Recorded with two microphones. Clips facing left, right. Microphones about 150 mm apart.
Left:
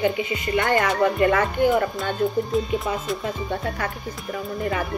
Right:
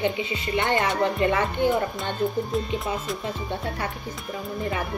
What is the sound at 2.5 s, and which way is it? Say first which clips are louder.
Speech: left 4 dB; centre (ahead or behind).